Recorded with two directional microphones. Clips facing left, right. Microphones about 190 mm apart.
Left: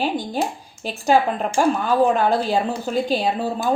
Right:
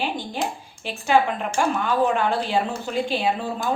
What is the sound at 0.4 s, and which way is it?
Speech, 40° left (ahead or behind).